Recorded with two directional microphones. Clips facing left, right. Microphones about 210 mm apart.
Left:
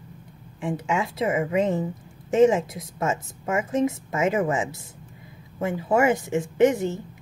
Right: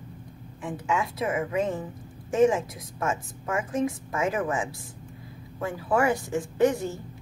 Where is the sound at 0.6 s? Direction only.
25° left (ahead or behind).